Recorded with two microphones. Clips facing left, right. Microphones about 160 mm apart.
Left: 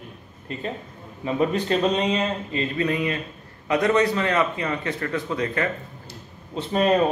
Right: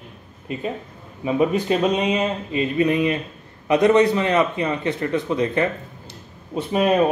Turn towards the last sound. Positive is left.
turn(degrees=-10)  # may be behind; listen again after turning